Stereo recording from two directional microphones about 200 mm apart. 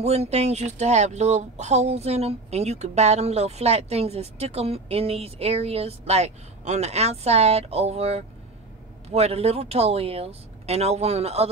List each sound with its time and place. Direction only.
0.0 s speech: 30° right (ahead or behind)